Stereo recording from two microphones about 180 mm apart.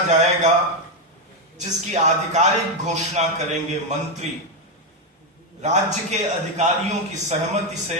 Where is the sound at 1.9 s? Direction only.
40° right (ahead or behind).